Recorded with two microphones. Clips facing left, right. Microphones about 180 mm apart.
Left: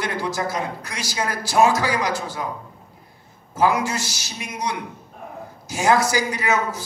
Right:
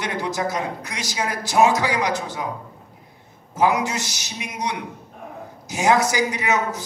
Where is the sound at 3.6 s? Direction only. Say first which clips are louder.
Even; 20° right (ahead or behind).